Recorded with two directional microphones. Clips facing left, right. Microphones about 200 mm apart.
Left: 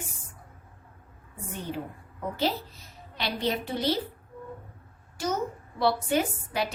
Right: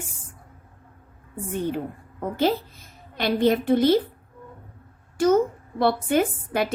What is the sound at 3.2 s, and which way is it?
Speech, 50° right (ahead or behind).